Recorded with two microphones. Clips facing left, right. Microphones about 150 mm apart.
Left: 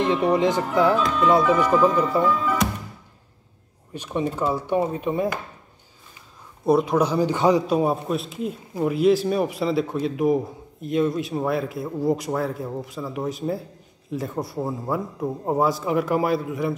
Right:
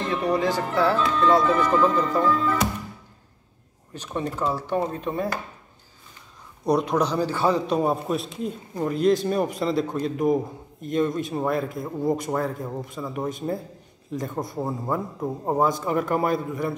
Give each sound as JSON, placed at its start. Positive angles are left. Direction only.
{"t": 0.0, "sound": "speech", "side_deg": 20}
{"t": 3.9, "sound": "speech", "side_deg": 10}
{"t": 6.6, "sound": "speech", "side_deg": 5}
{"t": 7.6, "sound": "a man's voice", "side_deg": 5}